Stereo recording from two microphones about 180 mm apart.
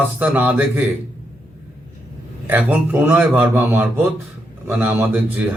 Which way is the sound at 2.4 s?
10° right (ahead or behind).